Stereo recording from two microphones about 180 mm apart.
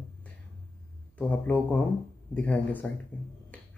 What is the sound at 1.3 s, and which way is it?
Speech, 10° left (ahead or behind).